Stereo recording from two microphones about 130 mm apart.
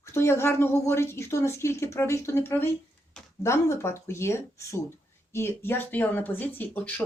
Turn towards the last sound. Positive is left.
turn(degrees=15)  # may be behind; listen again after turning